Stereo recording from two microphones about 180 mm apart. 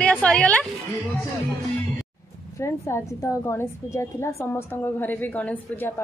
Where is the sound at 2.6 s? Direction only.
15° left (ahead or behind).